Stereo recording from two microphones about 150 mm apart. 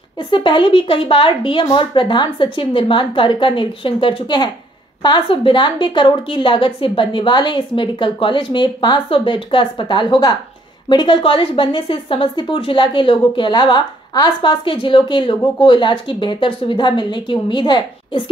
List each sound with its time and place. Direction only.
0.2 s a woman's voice: 30° left (ahead or behind)